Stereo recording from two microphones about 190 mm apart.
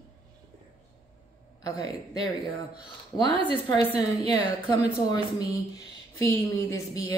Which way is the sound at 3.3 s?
30° right (ahead or behind).